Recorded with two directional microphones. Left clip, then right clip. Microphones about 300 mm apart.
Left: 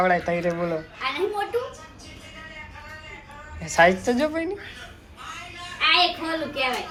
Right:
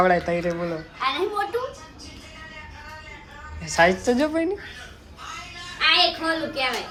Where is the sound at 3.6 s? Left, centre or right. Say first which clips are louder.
Left 1 dB; centre.